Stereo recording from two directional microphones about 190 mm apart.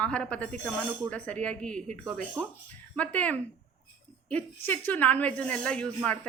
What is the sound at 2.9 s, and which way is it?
Speech, 5° left (ahead or behind).